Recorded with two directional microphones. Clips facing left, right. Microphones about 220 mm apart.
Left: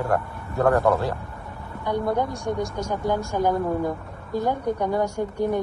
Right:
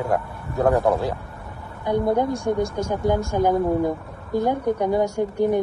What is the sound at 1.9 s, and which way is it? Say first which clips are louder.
A woman's voice: right 4 dB; 15° right (ahead or behind).